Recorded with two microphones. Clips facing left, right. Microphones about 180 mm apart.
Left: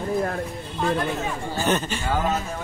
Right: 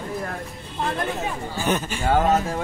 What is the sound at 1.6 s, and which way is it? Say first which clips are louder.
Speech: even; 10° right (ahead or behind).